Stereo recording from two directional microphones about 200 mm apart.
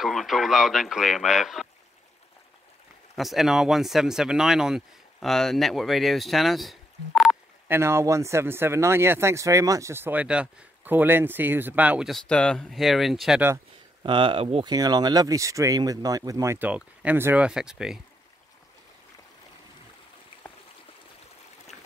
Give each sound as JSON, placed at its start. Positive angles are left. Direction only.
{"t": 0.0, "sound": "speech", "side_deg": 0}
{"t": 3.2, "sound": "speech", "side_deg": 0}
{"t": 14.0, "sound": "speech", "side_deg": -25}